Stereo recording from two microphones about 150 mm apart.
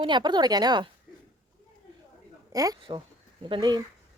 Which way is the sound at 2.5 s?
25° right (ahead or behind).